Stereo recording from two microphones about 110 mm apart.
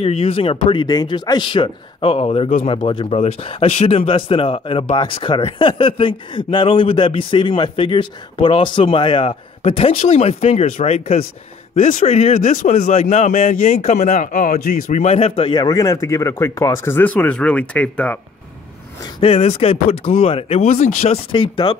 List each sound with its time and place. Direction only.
0.0 s speech: 60° left (ahead or behind)
3.1 s speech: 60° left (ahead or behind)
9.6 s a man's voice: 65° left (ahead or behind)
15.5 s speech: 35° left (ahead or behind); by 18.2 s 10° left (ahead or behind)
19.2 s speech: 65° left (ahead or behind)
21.3 s speech: 50° left (ahead or behind)